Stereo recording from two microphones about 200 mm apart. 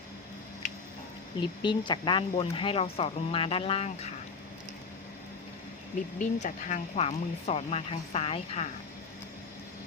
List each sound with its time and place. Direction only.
1.4 s speech: 25° left (ahead or behind)
6.1 s speech: 35° left (ahead or behind)